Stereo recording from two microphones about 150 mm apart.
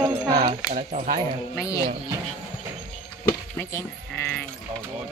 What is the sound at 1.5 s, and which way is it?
Speech, 20° left (ahead or behind).